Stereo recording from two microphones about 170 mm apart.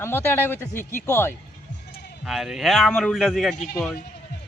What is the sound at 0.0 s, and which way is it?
Speech, 15° left (ahead or behind).